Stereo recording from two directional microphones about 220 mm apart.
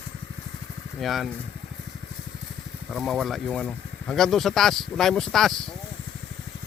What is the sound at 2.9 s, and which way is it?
Speech, centre (ahead or behind).